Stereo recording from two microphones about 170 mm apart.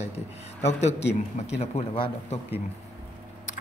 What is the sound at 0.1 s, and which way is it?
Speech, 40° left (ahead or behind).